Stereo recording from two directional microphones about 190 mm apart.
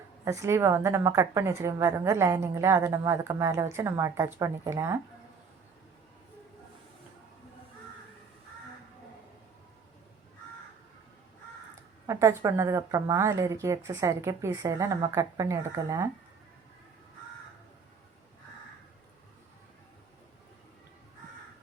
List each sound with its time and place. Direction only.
0.3 s a woman's voice: 15° right (ahead or behind)
11.7 s a woman's voice: 15° right (ahead or behind)